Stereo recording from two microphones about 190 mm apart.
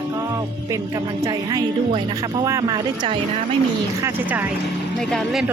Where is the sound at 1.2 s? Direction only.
20° right (ahead or behind).